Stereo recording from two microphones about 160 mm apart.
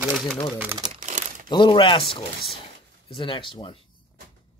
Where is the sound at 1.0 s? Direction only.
50° right (ahead or behind).